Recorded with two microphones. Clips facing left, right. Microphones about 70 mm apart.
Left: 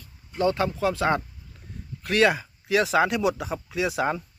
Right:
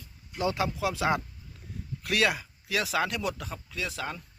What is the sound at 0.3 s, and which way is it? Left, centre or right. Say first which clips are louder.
Speech: left 5 dB; centre.